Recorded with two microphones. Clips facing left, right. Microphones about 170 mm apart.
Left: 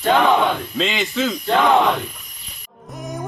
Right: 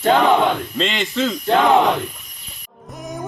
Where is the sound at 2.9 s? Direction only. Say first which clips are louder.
Left 1 dB; centre (ahead or behind).